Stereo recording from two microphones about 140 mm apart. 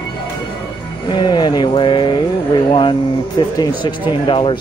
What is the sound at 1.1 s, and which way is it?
Speech, 30° left (ahead or behind).